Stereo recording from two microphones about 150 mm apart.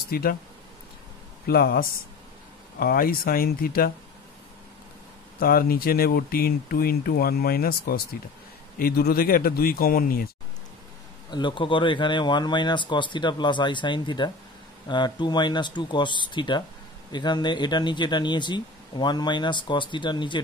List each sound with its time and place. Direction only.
0.1 s speech: 90° left
1.5 s speech: 90° left
2.8 s speech: 80° left
5.4 s speech: 75° left (ahead or behind)
11.2 s speech: 30° left (ahead or behind)